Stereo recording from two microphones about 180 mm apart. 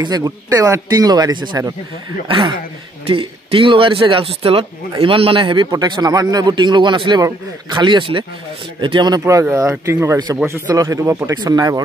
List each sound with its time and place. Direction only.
0.0 s a man's voice: 20° right (ahead or behind)